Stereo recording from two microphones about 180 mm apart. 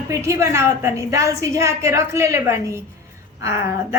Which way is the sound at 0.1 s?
15° right (ahead or behind).